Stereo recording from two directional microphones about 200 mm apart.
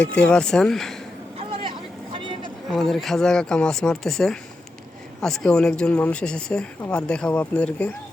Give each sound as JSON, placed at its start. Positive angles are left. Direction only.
{"t": 0.0, "sound": "speech", "side_deg": 5}
{"t": 1.4, "sound": "vehicle", "side_deg": -25}
{"t": 2.7, "sound": "speech", "side_deg": 0}